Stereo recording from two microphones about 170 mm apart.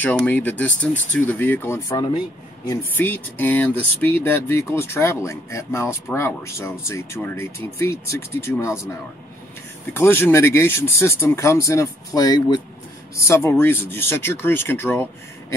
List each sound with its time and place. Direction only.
0.0 s speech: 10° left (ahead or behind)
2.8 s speech: 10° left (ahead or behind)
9.9 s speech: 15° left (ahead or behind)